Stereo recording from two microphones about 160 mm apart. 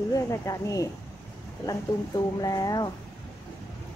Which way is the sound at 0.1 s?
20° left (ahead or behind).